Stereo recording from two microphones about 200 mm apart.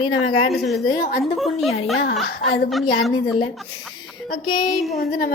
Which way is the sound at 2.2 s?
55° left (ahead or behind).